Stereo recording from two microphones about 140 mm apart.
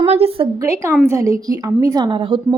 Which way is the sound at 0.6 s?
20° right (ahead or behind).